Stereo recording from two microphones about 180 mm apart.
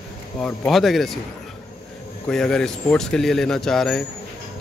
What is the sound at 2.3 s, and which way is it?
Speech, 5° left (ahead or behind).